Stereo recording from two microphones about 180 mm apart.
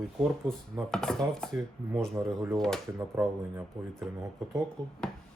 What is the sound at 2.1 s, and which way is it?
Speech, 15° right (ahead or behind).